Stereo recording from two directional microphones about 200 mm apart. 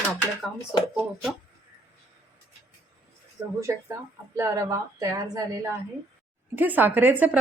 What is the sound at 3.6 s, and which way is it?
A woman's voice, 15° right (ahead or behind).